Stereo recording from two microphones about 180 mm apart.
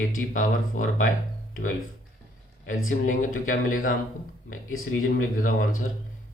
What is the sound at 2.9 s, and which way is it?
Speech, 45° left (ahead or behind).